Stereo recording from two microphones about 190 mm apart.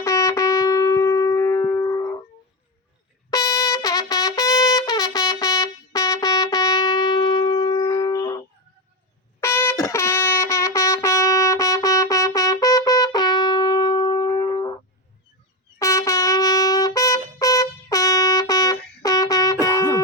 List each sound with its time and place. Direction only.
0.0 s music: 15° left (ahead or behind)
3.2 s trumpet: 20° left (ahead or behind)
9.4 s music: 15° left (ahead or behind)
15.8 s trumpet: 20° left (ahead or behind)